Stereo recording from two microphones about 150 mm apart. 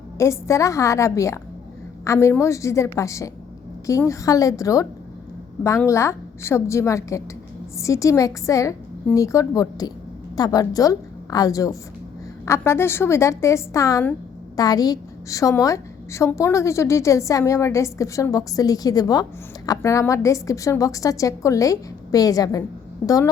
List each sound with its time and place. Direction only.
0.2 s a woman's voice: 20° left (ahead or behind)